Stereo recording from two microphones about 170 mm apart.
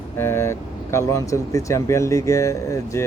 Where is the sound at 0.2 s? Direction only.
15° left (ahead or behind).